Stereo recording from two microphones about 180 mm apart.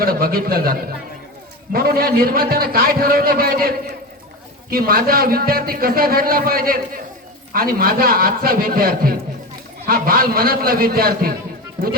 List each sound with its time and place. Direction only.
0.0 s a man's voice: 55° right (ahead or behind)
4.7 s a man's voice: 55° right (ahead or behind)